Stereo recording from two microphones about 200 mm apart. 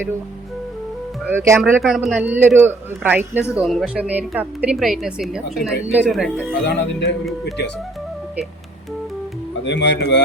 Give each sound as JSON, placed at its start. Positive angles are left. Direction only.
{"t": 1.3, "sound": "a woman's voice", "side_deg": -10}
{"t": 6.7, "sound": "speech", "side_deg": 55}
{"t": 9.6, "sound": "speech", "side_deg": 60}